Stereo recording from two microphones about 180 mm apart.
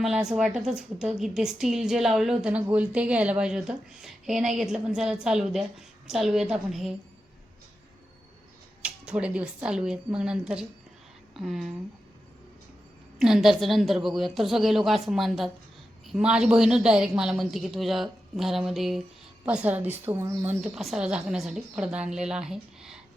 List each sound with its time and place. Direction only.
0.0 s a woman's voice: centre (ahead or behind)
8.8 s a woman's voice: 5° right (ahead or behind)
13.1 s a woman's voice: centre (ahead or behind)